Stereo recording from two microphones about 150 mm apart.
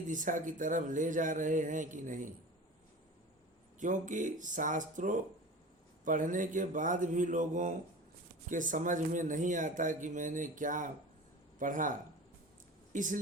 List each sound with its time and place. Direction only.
0.1 s speech: 60° right (ahead or behind)
3.8 s speech: 60° right (ahead or behind)